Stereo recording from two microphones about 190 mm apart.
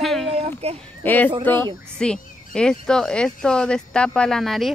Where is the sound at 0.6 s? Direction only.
35° right (ahead or behind).